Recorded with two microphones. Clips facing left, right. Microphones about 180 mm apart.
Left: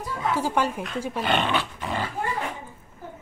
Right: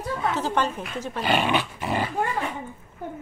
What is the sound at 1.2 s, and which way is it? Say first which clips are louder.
Dog: right 3 dB; 5° right (ahead or behind).